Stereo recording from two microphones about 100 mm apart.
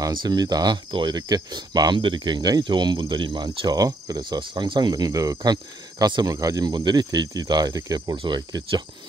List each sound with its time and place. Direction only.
0.0 s speech: 45° right (ahead or behind)